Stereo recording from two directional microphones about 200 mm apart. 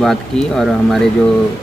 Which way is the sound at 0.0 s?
Centre (ahead or behind).